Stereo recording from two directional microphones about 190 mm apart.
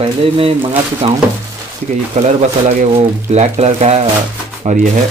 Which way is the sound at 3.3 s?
35° right (ahead or behind).